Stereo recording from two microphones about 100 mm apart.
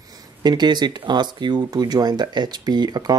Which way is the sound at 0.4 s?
45° right (ahead or behind).